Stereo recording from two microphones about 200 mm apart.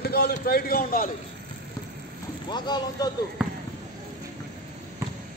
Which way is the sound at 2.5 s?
20° left (ahead or behind).